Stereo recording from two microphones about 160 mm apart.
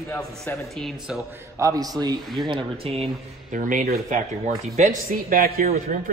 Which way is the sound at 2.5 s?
40° right (ahead or behind).